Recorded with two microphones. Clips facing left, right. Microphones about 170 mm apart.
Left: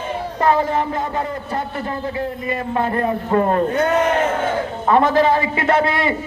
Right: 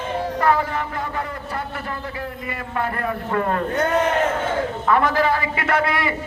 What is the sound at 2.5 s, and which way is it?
A man's voice, 25° left (ahead or behind).